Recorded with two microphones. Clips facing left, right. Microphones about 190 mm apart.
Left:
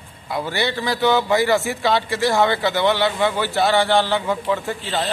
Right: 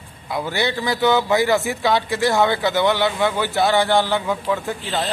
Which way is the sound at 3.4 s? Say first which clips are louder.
Right 1 dB; 15° right (ahead or behind).